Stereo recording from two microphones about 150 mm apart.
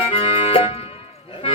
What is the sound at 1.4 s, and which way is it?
Music, 40° left (ahead or behind).